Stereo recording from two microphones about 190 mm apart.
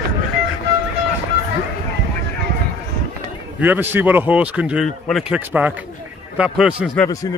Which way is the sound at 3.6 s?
10° right (ahead or behind).